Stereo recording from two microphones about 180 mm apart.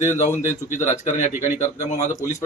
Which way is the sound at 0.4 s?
45° left (ahead or behind).